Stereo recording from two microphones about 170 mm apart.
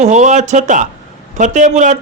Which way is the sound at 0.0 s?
45° right (ahead or behind).